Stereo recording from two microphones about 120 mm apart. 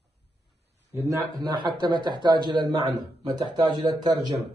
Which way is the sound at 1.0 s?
30° right (ahead or behind).